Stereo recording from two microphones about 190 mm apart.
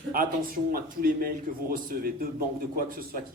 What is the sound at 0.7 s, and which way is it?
A man's voice, 50° right (ahead or behind).